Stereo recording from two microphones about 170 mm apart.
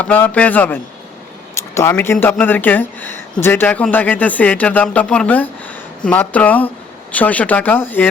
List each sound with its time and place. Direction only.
0.0 s speech: 10° left (ahead or behind)